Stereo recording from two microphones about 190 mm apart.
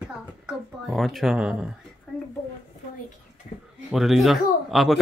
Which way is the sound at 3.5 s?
35° left (ahead or behind).